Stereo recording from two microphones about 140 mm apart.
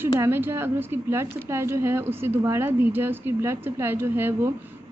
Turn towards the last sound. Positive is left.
turn(degrees=-15)  # may be behind; listen again after turning